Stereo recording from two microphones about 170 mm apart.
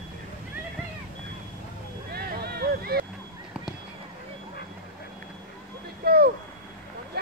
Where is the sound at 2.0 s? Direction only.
65° right (ahead or behind).